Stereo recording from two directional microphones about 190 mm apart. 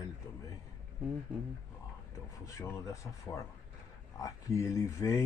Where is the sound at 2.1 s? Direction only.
15° left (ahead or behind).